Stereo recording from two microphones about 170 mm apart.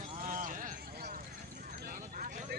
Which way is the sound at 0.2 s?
50° right (ahead or behind).